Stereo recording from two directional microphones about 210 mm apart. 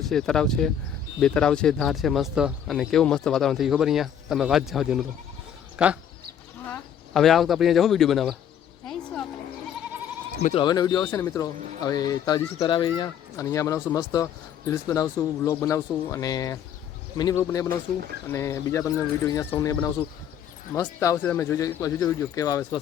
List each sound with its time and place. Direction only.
0.0 s speech: centre (ahead or behind)
6.7 s speech: 5° left (ahead or behind)
10.4 s speech: 25° left (ahead or behind)